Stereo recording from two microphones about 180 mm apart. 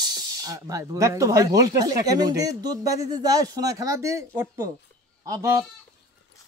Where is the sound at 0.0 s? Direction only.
20° right (ahead or behind).